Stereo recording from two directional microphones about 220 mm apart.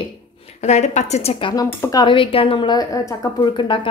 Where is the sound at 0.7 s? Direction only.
30° left (ahead or behind).